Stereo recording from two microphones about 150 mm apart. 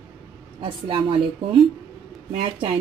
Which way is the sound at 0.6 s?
35° right (ahead or behind).